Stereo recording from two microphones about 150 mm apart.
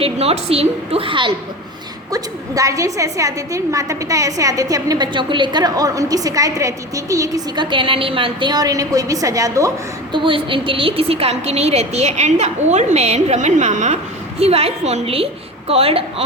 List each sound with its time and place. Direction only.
0.0 s a woman's voice: 45° right (ahead or behind)
2.1 s a woman's voice: 20° right (ahead or behind)
10.2 s a woman's voice: 35° right (ahead or behind)